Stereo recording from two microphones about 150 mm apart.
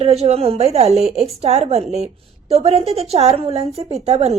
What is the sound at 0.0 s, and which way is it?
A woman's voice, 45° right (ahead or behind).